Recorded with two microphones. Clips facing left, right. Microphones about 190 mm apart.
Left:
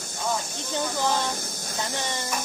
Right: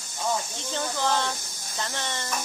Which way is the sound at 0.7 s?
15° left (ahead or behind).